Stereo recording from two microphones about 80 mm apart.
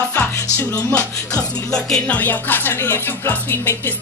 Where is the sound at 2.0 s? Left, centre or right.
Left.